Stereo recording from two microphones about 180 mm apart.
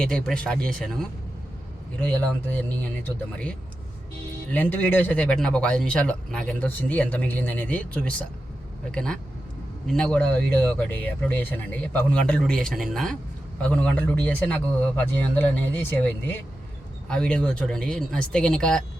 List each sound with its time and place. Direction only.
0.0 s a man's voice: 5° left (ahead or behind)
4.5 s a man's voice: 10° left (ahead or behind)